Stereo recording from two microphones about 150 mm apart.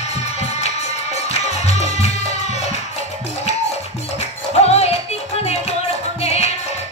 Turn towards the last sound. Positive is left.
turn(degrees=45)  # may be behind; listen again after turning